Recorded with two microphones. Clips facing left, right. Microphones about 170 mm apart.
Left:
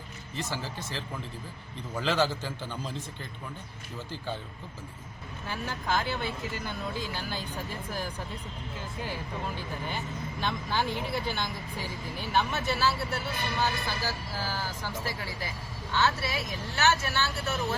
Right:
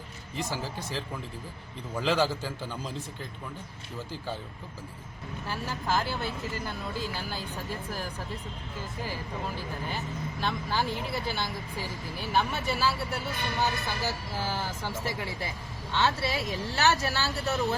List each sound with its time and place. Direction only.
0.3 s a man's voice: 10° right (ahead or behind)
5.5 s speech: 5° right (ahead or behind)
10.4 s a man's voice: 5° right (ahead or behind)
13.6 s speech: 20° right (ahead or behind)